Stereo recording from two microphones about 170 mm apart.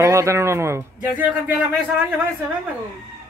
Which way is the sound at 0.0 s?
15° right (ahead or behind).